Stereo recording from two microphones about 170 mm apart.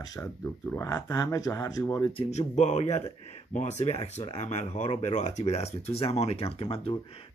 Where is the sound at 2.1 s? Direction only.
40° left (ahead or behind).